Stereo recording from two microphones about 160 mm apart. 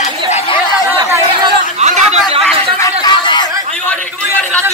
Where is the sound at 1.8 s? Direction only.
45° right (ahead or behind).